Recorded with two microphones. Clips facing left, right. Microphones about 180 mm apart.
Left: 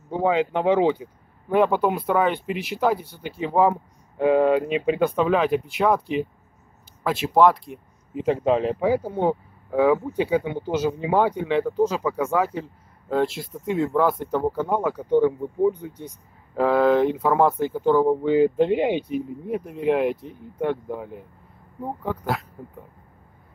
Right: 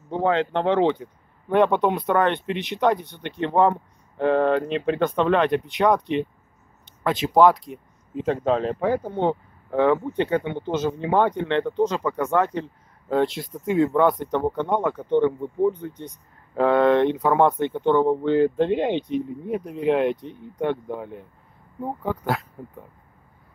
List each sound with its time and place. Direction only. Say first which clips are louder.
0.1 s speech: even; 10° left (ahead or behind)